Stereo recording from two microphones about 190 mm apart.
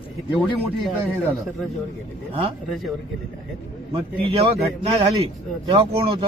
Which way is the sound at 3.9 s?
30° right (ahead or behind).